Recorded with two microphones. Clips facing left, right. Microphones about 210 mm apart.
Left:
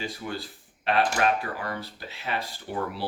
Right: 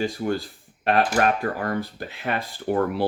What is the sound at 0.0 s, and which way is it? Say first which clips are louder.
Speech: right 9 dB; 45° right (ahead or behind).